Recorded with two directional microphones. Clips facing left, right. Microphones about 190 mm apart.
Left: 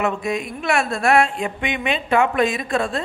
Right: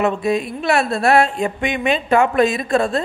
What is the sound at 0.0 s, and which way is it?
A woman's voice, 35° right (ahead or behind).